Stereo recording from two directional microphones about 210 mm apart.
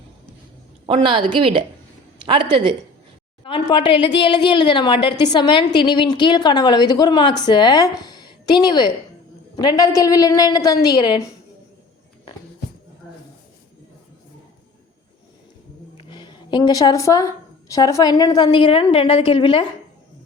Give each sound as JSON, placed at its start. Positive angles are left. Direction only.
{"t": 0.9, "sound": "a woman's voice", "side_deg": -25}
{"t": 3.4, "sound": "a woman's voice", "side_deg": 25}
{"t": 16.0, "sound": "a woman's voice", "side_deg": 20}